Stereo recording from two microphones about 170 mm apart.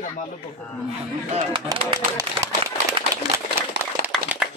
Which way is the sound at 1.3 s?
30° right (ahead or behind).